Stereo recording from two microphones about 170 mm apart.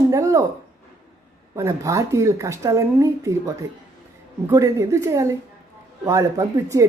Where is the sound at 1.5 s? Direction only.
15° right (ahead or behind).